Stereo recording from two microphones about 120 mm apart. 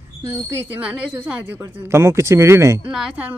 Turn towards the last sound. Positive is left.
turn(degrees=-10)  # may be behind; listen again after turning